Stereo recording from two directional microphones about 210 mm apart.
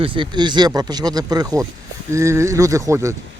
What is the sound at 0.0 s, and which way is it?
Speech, 25° right (ahead or behind).